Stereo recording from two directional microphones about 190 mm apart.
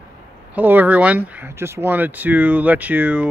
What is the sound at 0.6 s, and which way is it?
Speech, 10° right (ahead or behind).